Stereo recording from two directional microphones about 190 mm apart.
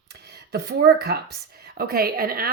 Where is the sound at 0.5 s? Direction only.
60° right (ahead or behind).